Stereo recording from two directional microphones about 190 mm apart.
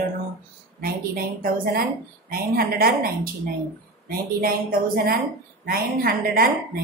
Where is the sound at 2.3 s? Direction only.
50° right (ahead or behind).